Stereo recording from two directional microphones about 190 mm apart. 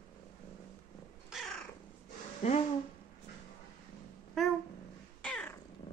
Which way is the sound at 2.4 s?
35° left (ahead or behind).